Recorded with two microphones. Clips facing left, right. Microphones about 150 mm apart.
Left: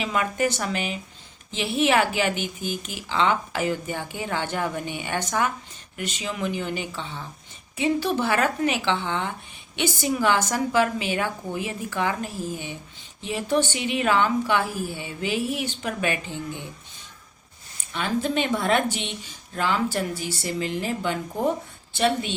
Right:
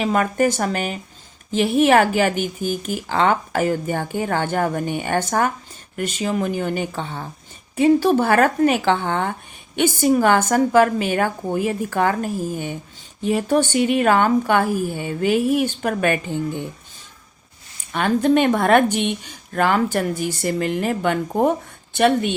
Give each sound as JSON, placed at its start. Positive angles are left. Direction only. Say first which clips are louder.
{"t": 0.0, "sound": "speech", "louder": "right 6 dB", "side_deg": -45}
{"t": 17.9, "sound": "a woman's voice", "louder": "right 8 dB", "side_deg": -55}